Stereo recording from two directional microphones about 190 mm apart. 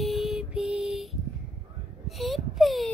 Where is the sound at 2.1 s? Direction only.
Centre (ahead or behind).